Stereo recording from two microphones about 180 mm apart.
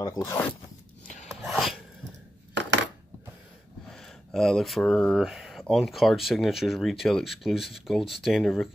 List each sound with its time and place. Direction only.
0.0 s speech: 20° left (ahead or behind)
1.4 s sneeze: centre (ahead or behind)
3.9 s speech: centre (ahead or behind)